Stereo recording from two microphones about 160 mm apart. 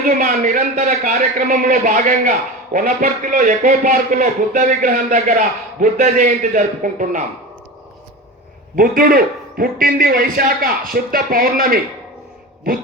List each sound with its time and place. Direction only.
0.2 s a man's voice: 55° right (ahead or behind)
8.7 s a man's voice: 60° right (ahead or behind)